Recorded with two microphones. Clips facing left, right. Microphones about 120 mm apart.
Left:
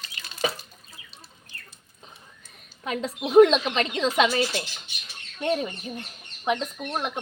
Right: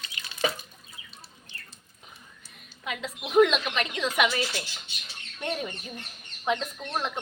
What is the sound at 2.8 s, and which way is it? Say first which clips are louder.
Speech: left 6 dB; 40° left (ahead or behind).